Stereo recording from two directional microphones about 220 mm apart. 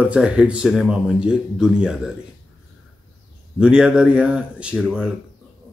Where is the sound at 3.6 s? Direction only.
5° right (ahead or behind).